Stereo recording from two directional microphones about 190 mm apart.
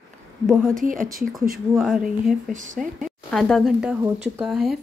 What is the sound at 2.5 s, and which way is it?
Speech, 40° right (ahead or behind).